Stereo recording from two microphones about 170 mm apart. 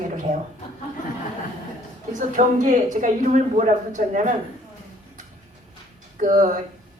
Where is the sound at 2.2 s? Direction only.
50° right (ahead or behind).